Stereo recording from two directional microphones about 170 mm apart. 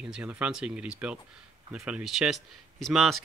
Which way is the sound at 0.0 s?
5° right (ahead or behind).